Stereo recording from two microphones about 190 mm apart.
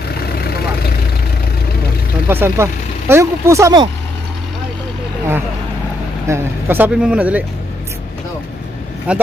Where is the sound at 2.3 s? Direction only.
10° right (ahead or behind).